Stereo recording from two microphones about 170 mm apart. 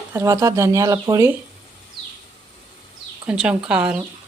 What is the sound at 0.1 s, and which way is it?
Speech, 15° right (ahead or behind).